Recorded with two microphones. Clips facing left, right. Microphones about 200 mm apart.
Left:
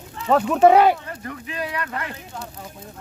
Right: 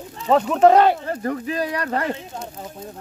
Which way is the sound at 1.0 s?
40° right (ahead or behind).